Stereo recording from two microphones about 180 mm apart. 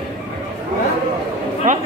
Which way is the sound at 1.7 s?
45° right (ahead or behind).